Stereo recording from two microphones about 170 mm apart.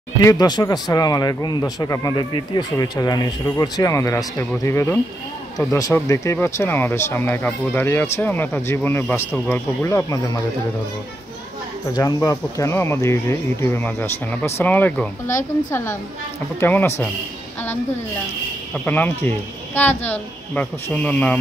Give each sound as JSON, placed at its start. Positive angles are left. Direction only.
{"t": 0.2, "sound": "a man's voice", "side_deg": 20}
{"t": 11.9, "sound": "speech", "side_deg": 20}
{"t": 18.9, "sound": "speech", "side_deg": 10}